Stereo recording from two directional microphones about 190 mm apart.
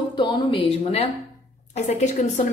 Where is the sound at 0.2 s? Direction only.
25° left (ahead or behind).